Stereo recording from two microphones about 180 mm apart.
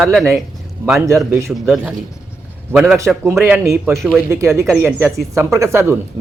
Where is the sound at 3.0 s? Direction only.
15° right (ahead or behind).